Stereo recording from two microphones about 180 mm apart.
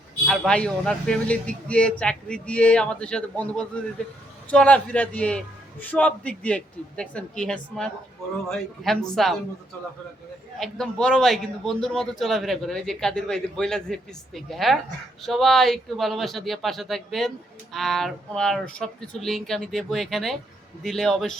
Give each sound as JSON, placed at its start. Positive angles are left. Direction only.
{"t": 0.3, "sound": "a woman's voice", "side_deg": 5}
{"t": 10.6, "sound": "speech", "side_deg": 5}